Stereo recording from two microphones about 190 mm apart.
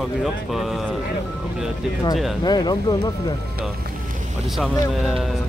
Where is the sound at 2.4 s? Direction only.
20° left (ahead or behind).